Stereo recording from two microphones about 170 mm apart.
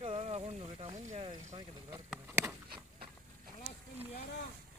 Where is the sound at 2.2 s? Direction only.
15° right (ahead or behind).